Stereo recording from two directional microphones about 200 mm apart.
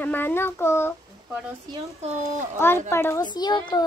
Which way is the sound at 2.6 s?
10° left (ahead or behind).